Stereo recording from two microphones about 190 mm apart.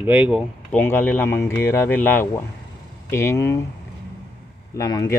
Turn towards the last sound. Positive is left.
turn(degrees=20)  # may be behind; listen again after turning